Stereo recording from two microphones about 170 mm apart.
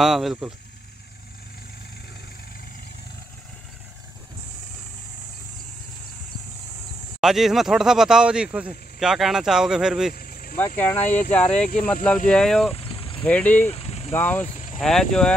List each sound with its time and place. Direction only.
0.0 s speech: centre (ahead or behind)
7.2 s speech: centre (ahead or behind)
10.1 s vehicle: 60° left (ahead or behind)
10.8 s speech: 10° left (ahead or behind)
11.1 s speech: 45° left (ahead or behind)
11.8 s speech: 5° left (ahead or behind)
12.7 s vehicle: 35° left (ahead or behind)
13.2 s speech: 10° left (ahead or behind)
13.7 s vehicle: 40° left (ahead or behind)
14.1 s speech: 10° left (ahead or behind)
14.4 s cricket: 45° left (ahead or behind)
14.8 s speech: 5° left (ahead or behind)